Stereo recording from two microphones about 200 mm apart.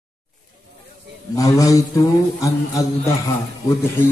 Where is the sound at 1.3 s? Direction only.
15° left (ahead or behind).